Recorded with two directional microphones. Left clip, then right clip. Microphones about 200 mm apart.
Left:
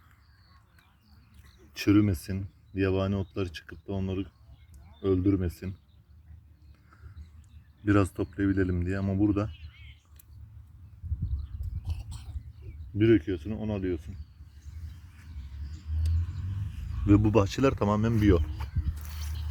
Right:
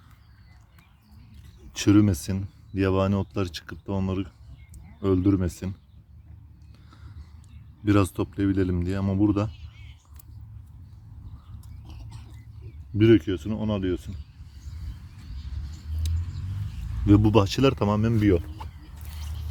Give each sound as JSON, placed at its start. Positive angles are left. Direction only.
{"t": 1.7, "sound": "speech", "side_deg": -25}
{"t": 7.9, "sound": "speech", "side_deg": -15}
{"t": 9.5, "sound": "a sound", "side_deg": -35}
{"t": 11.9, "sound": "rodents", "side_deg": 60}
{"t": 13.0, "sound": "speech", "side_deg": -30}
{"t": 17.1, "sound": "speech", "side_deg": -15}